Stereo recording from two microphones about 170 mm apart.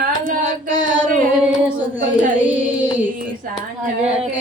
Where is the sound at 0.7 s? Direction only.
25° left (ahead or behind).